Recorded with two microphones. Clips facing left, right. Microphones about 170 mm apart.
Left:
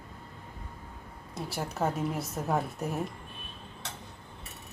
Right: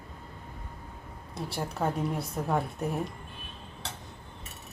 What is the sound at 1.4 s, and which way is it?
Speech, centre (ahead or behind).